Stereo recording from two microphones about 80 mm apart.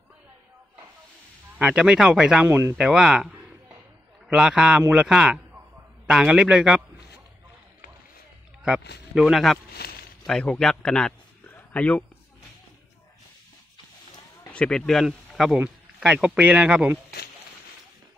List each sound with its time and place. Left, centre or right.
1.6 s speech: centre
2.4 s speech: right
2.8 s speech: centre
8.6 s a man's voice: centre
14.5 s speech: centre
15.0 s speech: centre